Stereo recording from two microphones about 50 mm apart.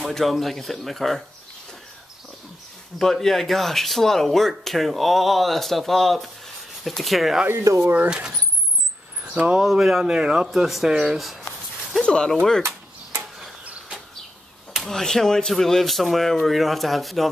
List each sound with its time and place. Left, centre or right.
0.1 s speech: centre
3.0 s speech: centre
7.6 s speech: right
8.1 s speech: centre
9.2 s a sound: right
9.6 s speech: centre
12.0 s speech: centre
12.6 s a sound: right
13.7 s bird: right
14.8 s speech: centre